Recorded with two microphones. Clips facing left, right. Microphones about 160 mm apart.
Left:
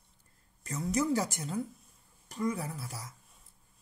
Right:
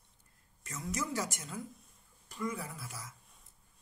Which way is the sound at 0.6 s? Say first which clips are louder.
Left 8 dB; 35° left (ahead or behind).